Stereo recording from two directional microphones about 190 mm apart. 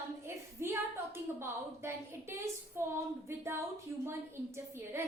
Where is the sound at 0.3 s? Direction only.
15° right (ahead or behind).